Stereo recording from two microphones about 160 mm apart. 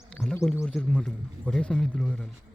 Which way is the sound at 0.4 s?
Centre (ahead or behind).